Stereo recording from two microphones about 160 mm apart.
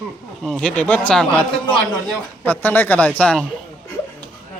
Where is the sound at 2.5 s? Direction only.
10° left (ahead or behind).